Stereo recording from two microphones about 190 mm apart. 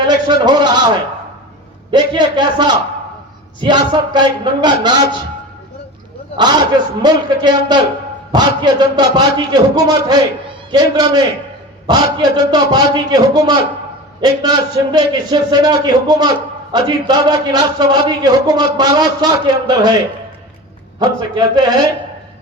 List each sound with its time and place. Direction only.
0.0 s a man's voice: 20° right (ahead or behind)
1.9 s a man's voice: 20° right (ahead or behind)
6.3 s a man's voice: 20° right (ahead or behind)
21.0 s a man's voice: 20° right (ahead or behind)